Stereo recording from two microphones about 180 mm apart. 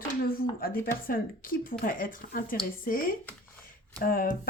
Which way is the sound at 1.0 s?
50° left (ahead or behind).